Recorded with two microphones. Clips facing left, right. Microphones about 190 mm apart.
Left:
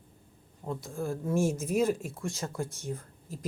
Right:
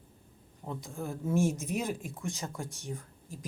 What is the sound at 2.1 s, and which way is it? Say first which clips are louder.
Speech: left 3 dB; 15° right (ahead or behind).